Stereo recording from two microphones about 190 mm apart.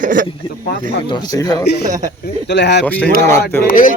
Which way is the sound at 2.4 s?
65° left (ahead or behind).